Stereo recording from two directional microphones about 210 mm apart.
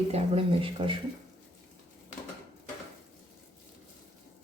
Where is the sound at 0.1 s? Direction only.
25° right (ahead or behind).